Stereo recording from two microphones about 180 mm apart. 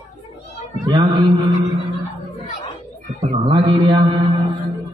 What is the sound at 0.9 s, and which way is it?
Mantra, 25° right (ahead or behind).